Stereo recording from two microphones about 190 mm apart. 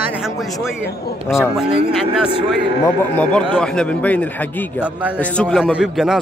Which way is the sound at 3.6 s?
5° left (ahead or behind).